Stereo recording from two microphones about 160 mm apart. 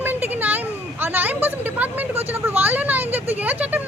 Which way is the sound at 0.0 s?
10° right (ahead or behind).